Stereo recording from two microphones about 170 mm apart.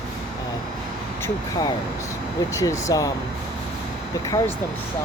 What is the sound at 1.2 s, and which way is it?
Speech, 20° left (ahead or behind).